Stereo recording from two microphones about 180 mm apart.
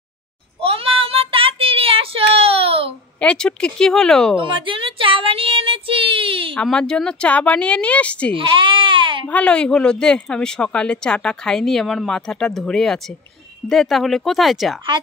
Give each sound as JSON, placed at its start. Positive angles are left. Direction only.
{"t": 0.6, "sound": "child singing", "side_deg": -30}
{"t": 3.2, "sound": "speech", "side_deg": 5}
{"t": 4.4, "sound": "child singing", "side_deg": -30}
{"t": 6.5, "sound": "speech", "side_deg": 5}
{"t": 8.3, "sound": "baby cry", "side_deg": -30}
{"t": 9.3, "sound": "speech", "side_deg": 5}